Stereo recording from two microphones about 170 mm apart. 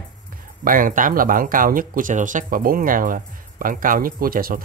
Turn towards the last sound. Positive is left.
turn(degrees=-60)  # may be behind; listen again after turning